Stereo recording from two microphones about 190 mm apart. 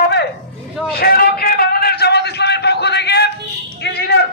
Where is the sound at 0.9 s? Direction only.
55° left (ahead or behind).